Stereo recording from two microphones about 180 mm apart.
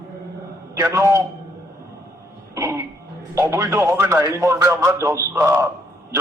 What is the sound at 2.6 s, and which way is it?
A man's voice, 15° right (ahead or behind).